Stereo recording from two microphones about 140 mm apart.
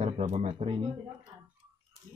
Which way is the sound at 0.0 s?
50° right (ahead or behind).